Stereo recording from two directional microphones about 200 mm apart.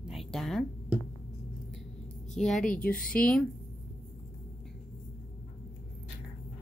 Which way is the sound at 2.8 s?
45° left (ahead or behind).